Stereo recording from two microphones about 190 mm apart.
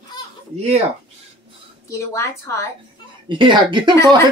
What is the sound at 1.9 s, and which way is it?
Speech, 15° left (ahead or behind).